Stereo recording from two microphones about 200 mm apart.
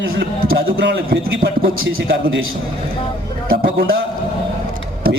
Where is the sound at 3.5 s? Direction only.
50° right (ahead or behind).